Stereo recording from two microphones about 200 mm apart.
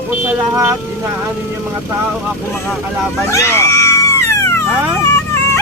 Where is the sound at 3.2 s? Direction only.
15° left (ahead or behind).